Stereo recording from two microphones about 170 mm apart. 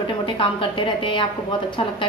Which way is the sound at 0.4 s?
30° left (ahead or behind).